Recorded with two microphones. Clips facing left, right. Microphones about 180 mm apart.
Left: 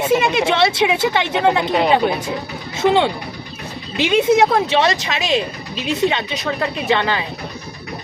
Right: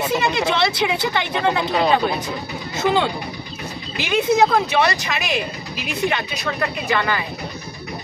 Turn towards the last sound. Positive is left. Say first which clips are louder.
# left 3 dB
turn(degrees=25)  # may be behind; listen again after turning